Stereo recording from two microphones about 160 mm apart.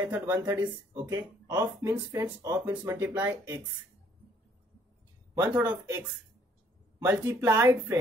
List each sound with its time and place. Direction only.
0.0 s speech: 15° right (ahead or behind)
5.5 s speech: 10° right (ahead or behind)